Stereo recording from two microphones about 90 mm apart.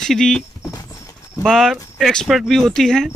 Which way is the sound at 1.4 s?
5° left (ahead or behind).